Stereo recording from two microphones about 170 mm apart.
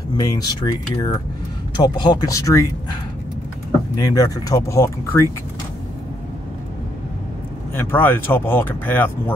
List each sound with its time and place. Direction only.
0.2 s speech: 20° left (ahead or behind)
4.1 s speech: 20° left (ahead or behind)
7.7 s speech: 10° left (ahead or behind)